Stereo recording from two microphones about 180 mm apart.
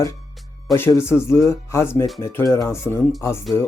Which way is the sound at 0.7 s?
15° left (ahead or behind).